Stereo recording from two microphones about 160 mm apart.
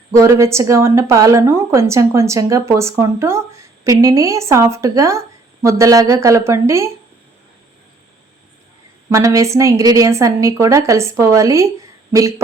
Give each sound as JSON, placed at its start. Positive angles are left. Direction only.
{"t": 0.1, "sound": "a woman's voice", "side_deg": -15}
{"t": 9.0, "sound": "a woman's voice", "side_deg": -20}